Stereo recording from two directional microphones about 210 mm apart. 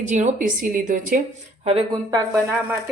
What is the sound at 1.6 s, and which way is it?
Speech, 25° right (ahead or behind).